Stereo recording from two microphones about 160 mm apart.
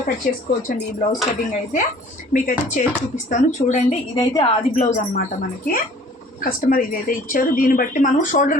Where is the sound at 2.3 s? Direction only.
55° left (ahead or behind).